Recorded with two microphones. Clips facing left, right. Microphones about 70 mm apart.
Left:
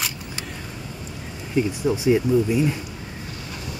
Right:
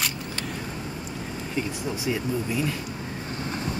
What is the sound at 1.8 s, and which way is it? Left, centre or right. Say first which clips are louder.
Speech: left 9 dB; left.